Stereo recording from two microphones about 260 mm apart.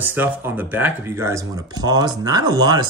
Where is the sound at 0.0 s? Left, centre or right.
Centre.